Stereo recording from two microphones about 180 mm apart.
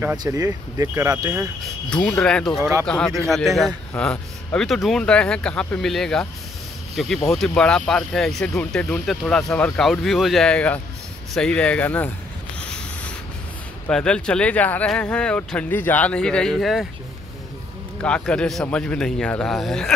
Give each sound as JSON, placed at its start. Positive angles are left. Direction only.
{"t": 0.2, "sound": "speech", "side_deg": -20}
{"t": 1.9, "sound": "speech", "side_deg": 5}
{"t": 7.2, "sound": "speech", "side_deg": 5}
{"t": 12.5, "sound": "a sound", "side_deg": 5}
{"t": 13.8, "sound": "speech", "side_deg": 5}
{"t": 18.0, "sound": "speech", "side_deg": 5}